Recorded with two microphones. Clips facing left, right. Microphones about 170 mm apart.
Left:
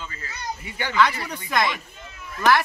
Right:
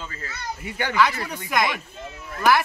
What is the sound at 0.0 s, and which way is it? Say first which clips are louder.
Speech: right 1 dB; 40° right (ahead or behind).